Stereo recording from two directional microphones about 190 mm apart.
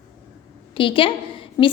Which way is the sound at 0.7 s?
25° left (ahead or behind).